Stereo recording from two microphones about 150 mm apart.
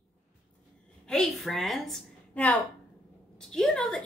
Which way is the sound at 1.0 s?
5° left (ahead or behind).